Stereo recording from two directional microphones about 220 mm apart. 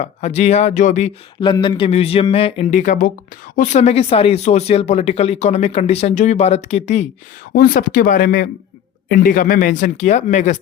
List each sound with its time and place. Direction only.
0.0 s speech: 30° left (ahead or behind)
1.4 s speech: 20° left (ahead or behind)